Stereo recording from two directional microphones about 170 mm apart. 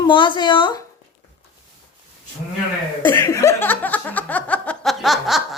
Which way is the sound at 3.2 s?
20° left (ahead or behind).